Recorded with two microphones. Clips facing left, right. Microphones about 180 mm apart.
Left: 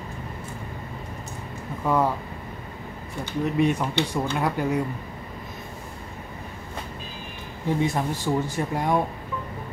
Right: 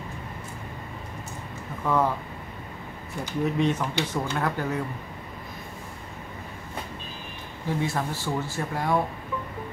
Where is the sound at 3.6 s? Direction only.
10° left (ahead or behind).